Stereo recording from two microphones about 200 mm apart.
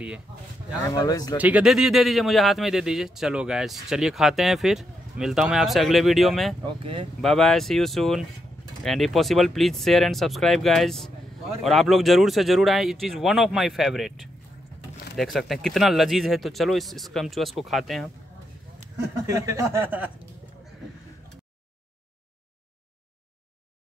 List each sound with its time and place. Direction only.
0.8 s speech: 20° left (ahead or behind)
1.4 s speech: 5° right (ahead or behind)
6.6 s speech: 25° right (ahead or behind)
7.2 s speech: centre (ahead or behind)
15.1 s speech: centre (ahead or behind)
19.2 s a sound: 15° right (ahead or behind)